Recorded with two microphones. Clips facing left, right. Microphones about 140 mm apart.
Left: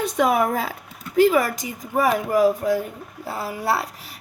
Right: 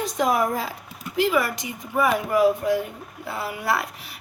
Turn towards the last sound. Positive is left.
turn(degrees=35)  # may be behind; listen again after turning